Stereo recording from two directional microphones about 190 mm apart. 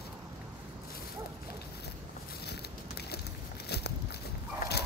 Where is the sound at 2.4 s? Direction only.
60° left (ahead or behind).